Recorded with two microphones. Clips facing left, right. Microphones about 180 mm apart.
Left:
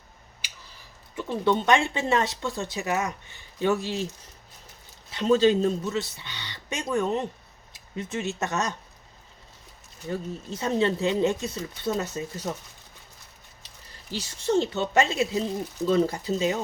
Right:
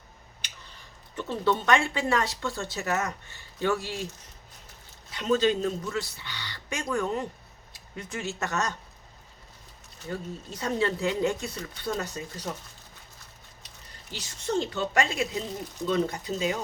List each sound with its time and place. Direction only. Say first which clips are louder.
1.1 s speech: left 2 dB; 15° left (ahead or behind)
5.1 s speech: left 4 dB; 30° left (ahead or behind)
10.1 s speech: left 4 dB; 25° left (ahead or behind)
14.1 s speech: left 5 dB; 30° left (ahead or behind)